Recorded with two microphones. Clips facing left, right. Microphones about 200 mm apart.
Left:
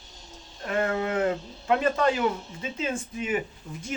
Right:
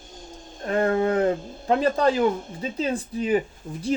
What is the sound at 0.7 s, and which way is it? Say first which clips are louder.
Speech: right 5 dB; 35° right (ahead or behind).